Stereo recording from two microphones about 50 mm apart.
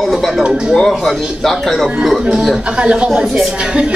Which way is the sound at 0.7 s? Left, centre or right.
Centre.